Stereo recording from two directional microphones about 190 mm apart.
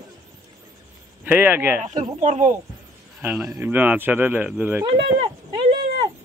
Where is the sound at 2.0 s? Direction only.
40° right (ahead or behind).